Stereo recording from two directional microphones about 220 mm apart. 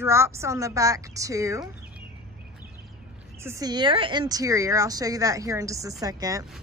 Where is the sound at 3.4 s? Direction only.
15° right (ahead or behind).